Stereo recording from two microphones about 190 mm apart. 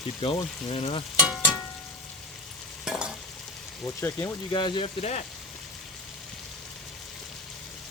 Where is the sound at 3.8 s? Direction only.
15° left (ahead or behind).